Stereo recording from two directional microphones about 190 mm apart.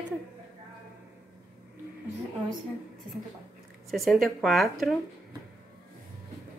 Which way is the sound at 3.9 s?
Centre (ahead or behind).